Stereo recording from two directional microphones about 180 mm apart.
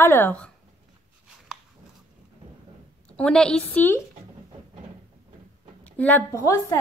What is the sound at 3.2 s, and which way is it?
Speech, 5° left (ahead or behind).